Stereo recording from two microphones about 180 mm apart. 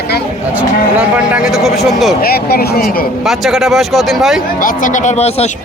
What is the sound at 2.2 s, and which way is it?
Speech, 60° left (ahead or behind).